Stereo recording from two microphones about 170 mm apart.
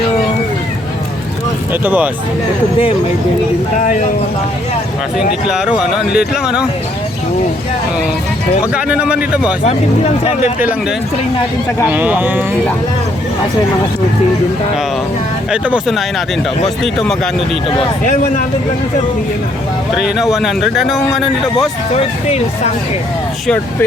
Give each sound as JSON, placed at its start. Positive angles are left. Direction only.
{"t": 1.8, "sound": "speech", "side_deg": -10}
{"t": 5.1, "sound": "speech", "side_deg": -5}
{"t": 8.7, "sound": "speech", "side_deg": -5}
{"t": 9.6, "sound": "speech", "side_deg": 40}
{"t": 11.9, "sound": "speech", "side_deg": -10}
{"t": 15.6, "sound": "speech", "side_deg": -5}
{"t": 18.0, "sound": "speech", "side_deg": 50}
{"t": 20.0, "sound": "speech", "side_deg": 0}
{"t": 21.9, "sound": "speech", "side_deg": 40}